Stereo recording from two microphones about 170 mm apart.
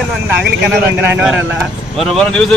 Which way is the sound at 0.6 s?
10° right (ahead or behind).